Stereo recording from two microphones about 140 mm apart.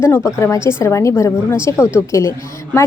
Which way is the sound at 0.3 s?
20° left (ahead or behind).